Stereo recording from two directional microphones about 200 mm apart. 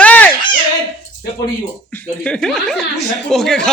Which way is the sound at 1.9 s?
5° left (ahead or behind).